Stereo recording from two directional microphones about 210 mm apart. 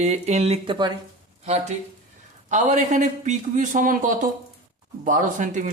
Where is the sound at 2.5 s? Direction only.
35° right (ahead or behind).